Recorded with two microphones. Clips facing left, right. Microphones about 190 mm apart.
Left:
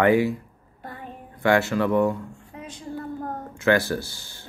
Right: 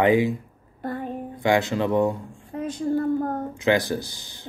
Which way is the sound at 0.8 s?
40° right (ahead or behind).